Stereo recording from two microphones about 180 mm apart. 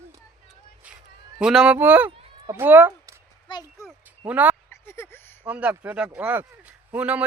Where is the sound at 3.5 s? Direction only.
20° left (ahead or behind).